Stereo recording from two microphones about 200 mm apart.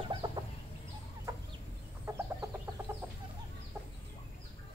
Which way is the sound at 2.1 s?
15° right (ahead or behind).